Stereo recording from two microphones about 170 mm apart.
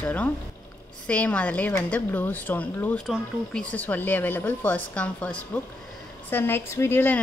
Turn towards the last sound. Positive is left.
turn(degrees=15)  # may be behind; listen again after turning